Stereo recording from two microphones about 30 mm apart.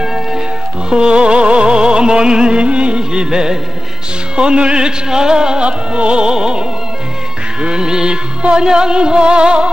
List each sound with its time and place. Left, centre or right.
0.0 s music: centre
0.8 s music: right
5.6 s music: right
7.6 s music: right